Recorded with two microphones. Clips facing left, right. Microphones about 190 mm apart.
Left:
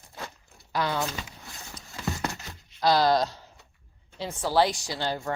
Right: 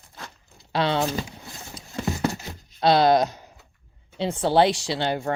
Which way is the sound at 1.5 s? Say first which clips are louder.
Right 2 dB; 35° right (ahead or behind).